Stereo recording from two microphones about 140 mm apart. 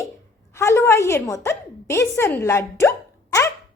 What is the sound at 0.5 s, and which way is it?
A woman's voice, 20° left (ahead or behind).